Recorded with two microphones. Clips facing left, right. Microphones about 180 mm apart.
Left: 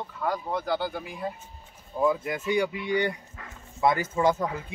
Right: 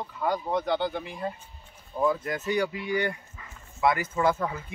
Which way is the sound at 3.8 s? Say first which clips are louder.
Left 1 dB; 25° left (ahead or behind).